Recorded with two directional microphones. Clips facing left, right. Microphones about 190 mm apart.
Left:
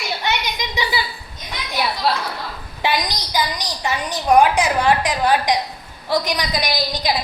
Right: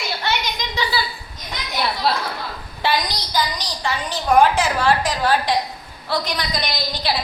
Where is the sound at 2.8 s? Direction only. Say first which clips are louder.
Even; 15° left (ahead or behind).